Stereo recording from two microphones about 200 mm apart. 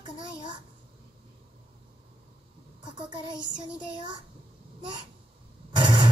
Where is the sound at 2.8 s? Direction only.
20° right (ahead or behind).